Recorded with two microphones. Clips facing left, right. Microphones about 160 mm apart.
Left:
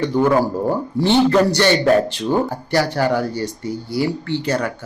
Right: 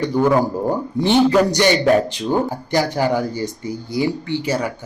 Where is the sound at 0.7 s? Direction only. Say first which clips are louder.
Even; 15° right (ahead or behind).